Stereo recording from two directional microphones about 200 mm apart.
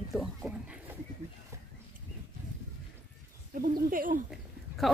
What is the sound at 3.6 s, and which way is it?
Speech, 45° right (ahead or behind).